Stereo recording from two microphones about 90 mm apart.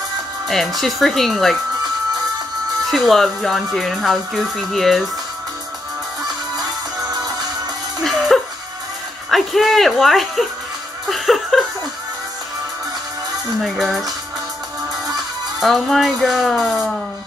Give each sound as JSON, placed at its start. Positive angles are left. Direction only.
{"t": 0.5, "sound": "speech", "side_deg": 0}
{"t": 2.9, "sound": "speech", "side_deg": 0}
{"t": 7.1, "sound": "music", "side_deg": -50}
{"t": 8.0, "sound": "music", "side_deg": 0}
{"t": 9.3, "sound": "speech", "side_deg": 0}
{"t": 11.1, "sound": "music", "side_deg": 0}
{"t": 13.6, "sound": "speech", "side_deg": 0}
{"t": 15.6, "sound": "speech", "side_deg": 0}